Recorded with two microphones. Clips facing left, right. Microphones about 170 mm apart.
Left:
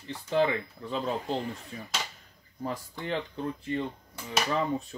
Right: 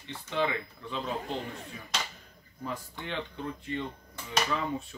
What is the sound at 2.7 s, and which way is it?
Speech, 40° left (ahead or behind).